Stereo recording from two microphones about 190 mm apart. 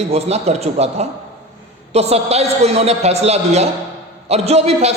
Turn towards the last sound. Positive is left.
turn(degrees=-35)  # may be behind; listen again after turning